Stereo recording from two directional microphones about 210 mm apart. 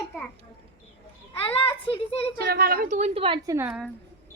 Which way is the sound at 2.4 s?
45° right (ahead or behind).